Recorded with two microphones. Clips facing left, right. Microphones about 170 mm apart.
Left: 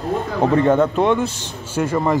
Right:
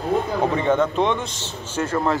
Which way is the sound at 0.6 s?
10° left (ahead or behind).